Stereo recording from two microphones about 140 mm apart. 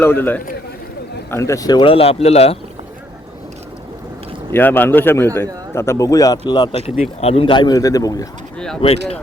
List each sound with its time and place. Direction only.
0.0 s a man's voice: 15° left (ahead or behind)
1.8 s speech: 45° left (ahead or behind)
4.5 s a man's voice: 15° left (ahead or behind)
6.5 s a man's voice: 35° left (ahead or behind)
8.5 s speech: 5° left (ahead or behind)
8.8 s speech: 45° left (ahead or behind)